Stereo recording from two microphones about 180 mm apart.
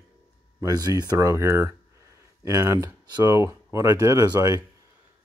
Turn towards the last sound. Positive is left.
turn(degrees=-20)  # may be behind; listen again after turning